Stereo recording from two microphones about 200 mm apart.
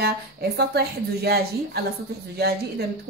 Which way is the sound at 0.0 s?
50° right (ahead or behind).